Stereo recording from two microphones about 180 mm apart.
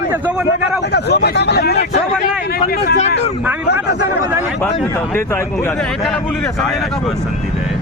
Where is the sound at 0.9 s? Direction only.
65° left (ahead or behind).